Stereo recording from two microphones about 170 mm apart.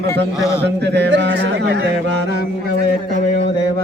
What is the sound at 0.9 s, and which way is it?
Speech, 85° right.